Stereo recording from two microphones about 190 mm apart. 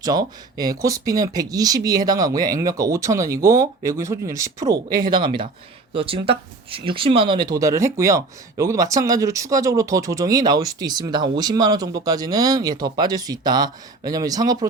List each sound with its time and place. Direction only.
0.0 s speech: 20° right (ahead or behind)